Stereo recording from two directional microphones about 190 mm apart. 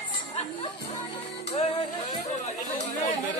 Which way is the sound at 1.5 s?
25° left (ahead or behind).